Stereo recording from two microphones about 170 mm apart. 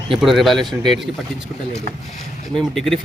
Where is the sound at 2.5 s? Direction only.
Centre (ahead or behind).